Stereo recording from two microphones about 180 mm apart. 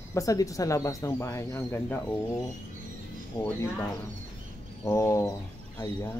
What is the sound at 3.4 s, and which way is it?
Speech, 15° left (ahead or behind).